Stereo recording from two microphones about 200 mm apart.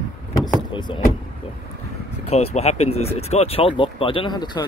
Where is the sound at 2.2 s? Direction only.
35° left (ahead or behind).